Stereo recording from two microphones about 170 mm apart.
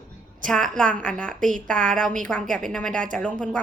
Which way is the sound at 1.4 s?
50° right (ahead or behind).